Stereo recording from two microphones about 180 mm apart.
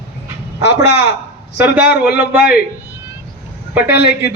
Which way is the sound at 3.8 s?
65° left (ahead or behind).